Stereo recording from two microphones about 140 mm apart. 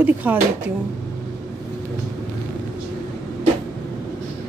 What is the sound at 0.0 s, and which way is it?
Speech, 10° right (ahead or behind).